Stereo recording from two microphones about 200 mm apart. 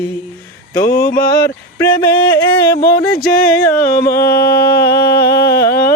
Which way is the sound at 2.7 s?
55° left (ahead or behind).